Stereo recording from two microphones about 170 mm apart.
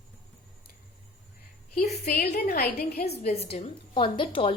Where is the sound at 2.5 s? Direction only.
65° left (ahead or behind).